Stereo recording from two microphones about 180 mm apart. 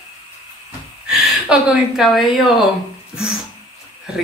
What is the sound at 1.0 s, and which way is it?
Speech, 5° right (ahead or behind).